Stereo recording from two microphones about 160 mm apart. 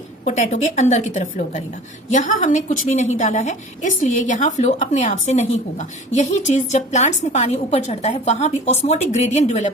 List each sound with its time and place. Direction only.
0.3 s a woman's voice: 50° left (ahead or behind)